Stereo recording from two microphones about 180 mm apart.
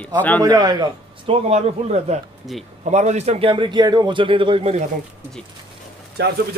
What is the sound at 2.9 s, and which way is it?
A man's voice, 40° right (ahead or behind).